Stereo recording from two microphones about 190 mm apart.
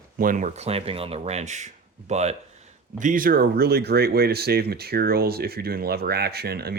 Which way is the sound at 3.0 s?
45° right (ahead or behind).